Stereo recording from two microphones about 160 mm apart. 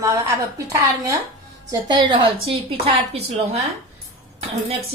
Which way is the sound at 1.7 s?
25° right (ahead or behind).